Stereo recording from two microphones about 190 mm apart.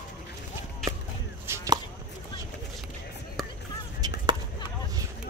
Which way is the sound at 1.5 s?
15° right (ahead or behind).